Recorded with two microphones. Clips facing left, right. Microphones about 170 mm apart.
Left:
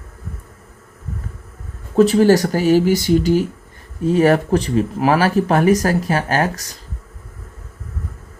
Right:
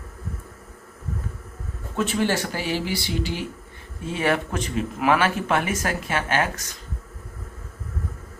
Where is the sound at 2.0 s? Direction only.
40° left (ahead or behind).